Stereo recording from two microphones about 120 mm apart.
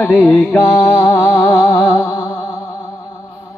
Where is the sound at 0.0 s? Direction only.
10° left (ahead or behind); by 2.5 s 30° left (ahead or behind).